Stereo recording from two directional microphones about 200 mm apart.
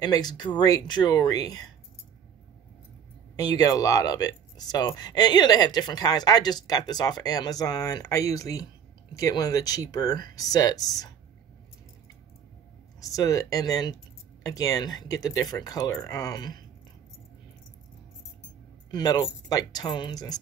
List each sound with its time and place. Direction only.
0.0 s speech: 20° left (ahead or behind)
3.3 s speech: 20° left (ahead or behind)
13.0 s speech: 15° left (ahead or behind)
18.9 s speech: 20° left (ahead or behind)